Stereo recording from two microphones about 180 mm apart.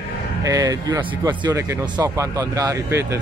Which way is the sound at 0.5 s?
20° right (ahead or behind).